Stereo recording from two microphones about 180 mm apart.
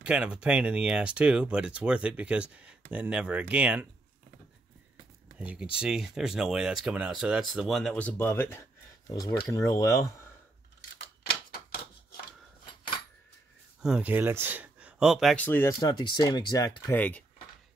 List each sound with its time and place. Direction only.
0.0 s speech: 5° right (ahead or behind)
5.4 s speech: 5° right (ahead or behind); by 10.2 s 20° left (ahead or behind)
13.8 s speech: 5° right (ahead or behind)
15.4 s speech: 10° left (ahead or behind)
15.9 s speech: 25° left (ahead or behind)
16.9 s speech: 10° left (ahead or behind)